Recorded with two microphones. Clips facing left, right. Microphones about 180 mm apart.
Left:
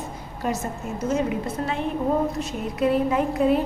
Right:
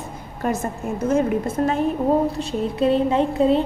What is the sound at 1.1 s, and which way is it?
Speech, 50° right (ahead or behind).